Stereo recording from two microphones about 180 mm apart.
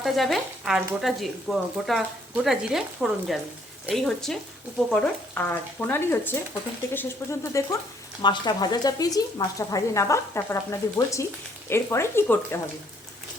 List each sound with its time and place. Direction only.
0.0 s speech: centre (ahead or behind)